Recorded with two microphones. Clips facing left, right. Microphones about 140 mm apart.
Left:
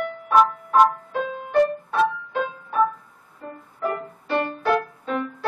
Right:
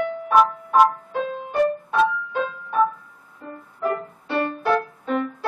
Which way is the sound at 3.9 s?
Centre (ahead or behind).